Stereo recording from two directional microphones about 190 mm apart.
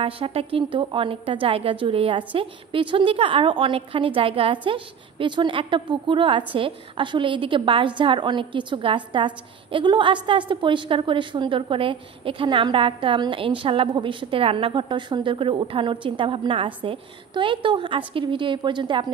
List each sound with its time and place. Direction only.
0.0 s a woman's voice: 30° right (ahead or behind)